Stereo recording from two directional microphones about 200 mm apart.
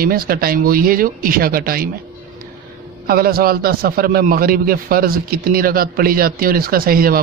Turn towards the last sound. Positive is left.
turn(degrees=-45)  # may be behind; listen again after turning